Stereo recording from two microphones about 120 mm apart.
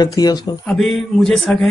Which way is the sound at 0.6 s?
Centre (ahead or behind).